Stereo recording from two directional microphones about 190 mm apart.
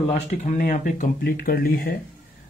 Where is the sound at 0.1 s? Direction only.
45° left (ahead or behind).